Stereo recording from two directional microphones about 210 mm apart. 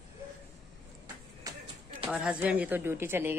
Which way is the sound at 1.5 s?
15° right (ahead or behind).